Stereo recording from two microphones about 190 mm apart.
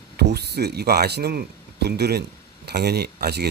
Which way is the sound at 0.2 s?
60° right (ahead or behind).